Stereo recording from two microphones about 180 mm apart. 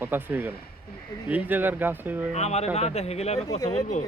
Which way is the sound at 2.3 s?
35° left (ahead or behind).